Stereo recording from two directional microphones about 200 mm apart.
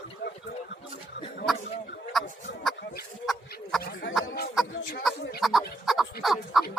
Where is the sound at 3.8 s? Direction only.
55° left (ahead or behind).